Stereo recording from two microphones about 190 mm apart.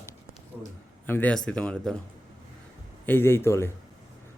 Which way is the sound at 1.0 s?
10° left (ahead or behind).